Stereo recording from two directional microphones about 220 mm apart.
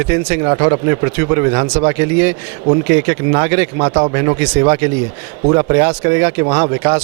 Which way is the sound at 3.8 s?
25° right (ahead or behind).